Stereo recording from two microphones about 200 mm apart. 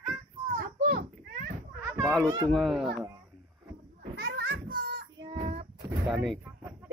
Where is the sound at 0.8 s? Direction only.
45° right (ahead or behind).